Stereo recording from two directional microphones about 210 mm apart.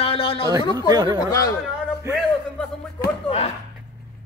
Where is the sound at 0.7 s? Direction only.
20° right (ahead or behind).